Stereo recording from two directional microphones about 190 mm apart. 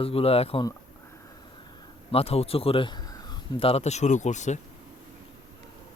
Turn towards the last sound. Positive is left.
turn(degrees=40)  # may be behind; listen again after turning